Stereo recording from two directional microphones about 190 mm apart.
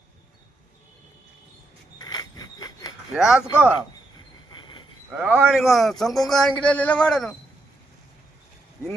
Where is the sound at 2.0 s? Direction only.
20° left (ahead or behind).